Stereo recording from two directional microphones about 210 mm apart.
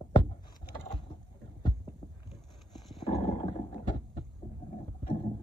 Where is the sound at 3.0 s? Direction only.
20° left (ahead or behind).